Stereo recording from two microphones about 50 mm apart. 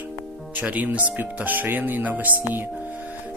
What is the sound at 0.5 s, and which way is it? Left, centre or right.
Speech, right.